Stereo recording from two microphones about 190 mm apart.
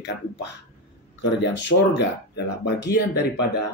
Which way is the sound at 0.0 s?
65° left (ahead or behind).